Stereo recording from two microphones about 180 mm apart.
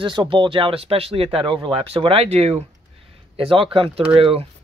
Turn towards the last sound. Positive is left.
turn(degrees=-30)  # may be behind; listen again after turning